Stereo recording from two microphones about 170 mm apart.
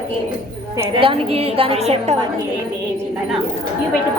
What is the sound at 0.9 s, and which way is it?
A woman's voice, 30° right (ahead or behind).